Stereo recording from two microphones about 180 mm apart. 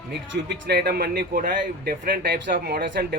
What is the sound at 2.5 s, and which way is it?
Speech, 65° right (ahead or behind).